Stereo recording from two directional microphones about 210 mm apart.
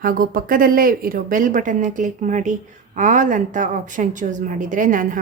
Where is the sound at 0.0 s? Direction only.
40° right (ahead or behind).